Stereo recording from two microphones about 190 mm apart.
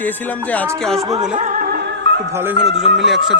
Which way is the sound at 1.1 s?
20° right (ahead or behind).